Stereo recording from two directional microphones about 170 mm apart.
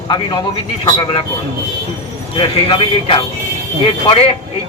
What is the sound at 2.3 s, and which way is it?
Speech, 30° left (ahead or behind).